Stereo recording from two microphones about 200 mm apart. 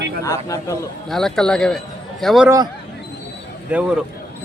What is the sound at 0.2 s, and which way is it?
Speech, 15° left (ahead or behind).